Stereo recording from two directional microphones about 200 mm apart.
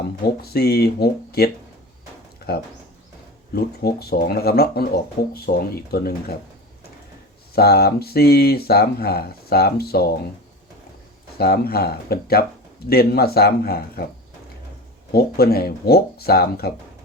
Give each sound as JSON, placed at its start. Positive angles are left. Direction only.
{"t": 0.4, "sound": "speech", "side_deg": 50}
{"t": 2.5, "sound": "speech", "side_deg": 50}
{"t": 7.5, "sound": "speech", "side_deg": 50}
{"t": 11.3, "sound": "speech", "side_deg": 50}
{"t": 15.1, "sound": "speech", "side_deg": 50}